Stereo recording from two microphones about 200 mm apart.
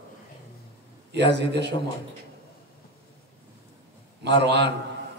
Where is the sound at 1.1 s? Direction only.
60° right (ahead or behind).